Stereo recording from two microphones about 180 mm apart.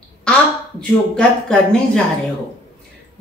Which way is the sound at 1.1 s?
5° left (ahead or behind).